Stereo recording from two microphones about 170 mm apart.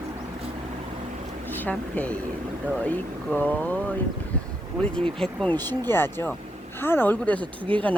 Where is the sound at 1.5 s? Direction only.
10° left (ahead or behind).